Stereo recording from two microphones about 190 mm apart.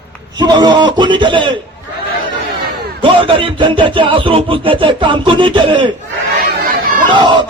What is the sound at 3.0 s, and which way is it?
Music, 25° right (ahead or behind).